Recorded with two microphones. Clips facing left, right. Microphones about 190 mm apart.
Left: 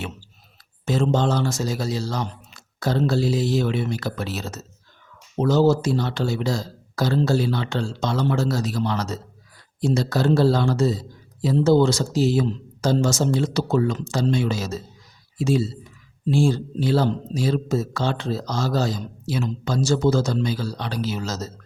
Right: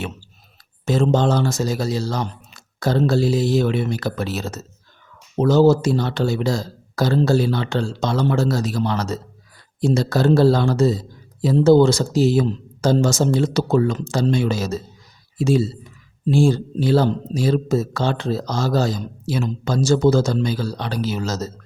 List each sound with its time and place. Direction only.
0.9 s speech: 55° right (ahead or behind)
5.4 s speech: 60° right (ahead or behind)
16.3 s speech: 45° right (ahead or behind)